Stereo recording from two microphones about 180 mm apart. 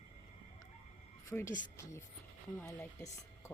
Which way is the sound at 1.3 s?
15° left (ahead or behind).